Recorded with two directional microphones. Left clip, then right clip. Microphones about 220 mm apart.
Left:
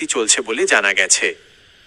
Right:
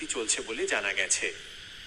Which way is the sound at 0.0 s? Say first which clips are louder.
Left 13 dB; 45° left (ahead or behind).